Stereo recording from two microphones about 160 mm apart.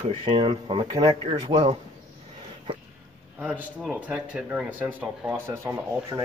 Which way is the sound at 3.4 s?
10° right (ahead or behind).